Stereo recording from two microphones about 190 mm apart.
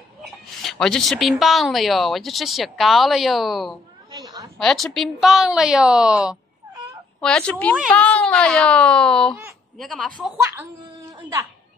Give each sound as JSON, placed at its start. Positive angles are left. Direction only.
{"t": 0.6, "sound": "a woman's voice", "side_deg": 0}
{"t": 4.1, "sound": "a sound", "side_deg": -20}
{"t": 4.6, "sound": "a woman's voice", "side_deg": 0}